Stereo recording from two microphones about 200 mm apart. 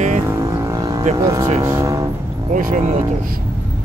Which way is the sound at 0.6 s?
15° right (ahead or behind).